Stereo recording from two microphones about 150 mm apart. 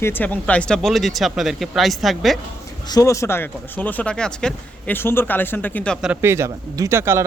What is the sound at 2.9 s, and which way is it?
Speech, 20° left (ahead or behind).